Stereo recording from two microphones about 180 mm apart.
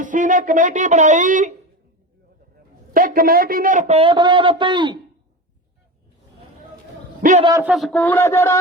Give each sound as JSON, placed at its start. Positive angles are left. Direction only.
{"t": 0.0, "sound": "speech", "side_deg": -45}
{"t": 2.9, "sound": "a man's voice", "side_deg": -55}
{"t": 7.2, "sound": "a man's voice", "side_deg": -45}
{"t": 7.6, "sound": "speech", "side_deg": 0}